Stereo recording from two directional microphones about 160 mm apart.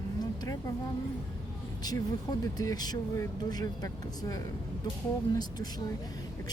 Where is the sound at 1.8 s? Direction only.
25° left (ahead or behind).